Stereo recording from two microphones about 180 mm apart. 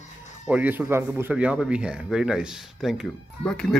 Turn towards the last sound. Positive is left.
turn(degrees=5)  # may be behind; listen again after turning